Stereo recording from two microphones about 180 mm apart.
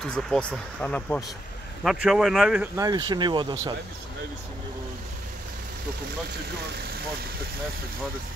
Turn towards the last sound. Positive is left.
turn(degrees=-60)  # may be behind; listen again after turning